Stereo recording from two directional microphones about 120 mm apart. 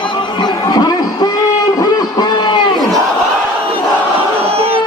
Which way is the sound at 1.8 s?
35° left (ahead or behind).